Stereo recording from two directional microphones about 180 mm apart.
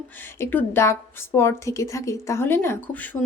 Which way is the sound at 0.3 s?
15° left (ahead or behind).